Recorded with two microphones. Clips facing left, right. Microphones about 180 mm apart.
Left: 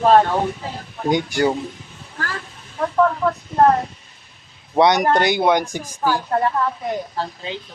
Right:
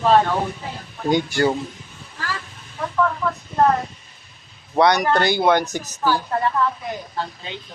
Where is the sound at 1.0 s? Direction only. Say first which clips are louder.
Even; 15° left (ahead or behind).